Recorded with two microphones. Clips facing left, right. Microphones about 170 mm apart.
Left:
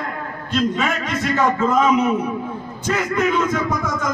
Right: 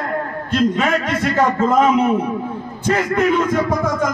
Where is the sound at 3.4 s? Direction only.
55° right (ahead or behind).